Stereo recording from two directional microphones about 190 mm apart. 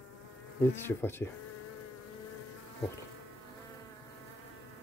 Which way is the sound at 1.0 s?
10° left (ahead or behind).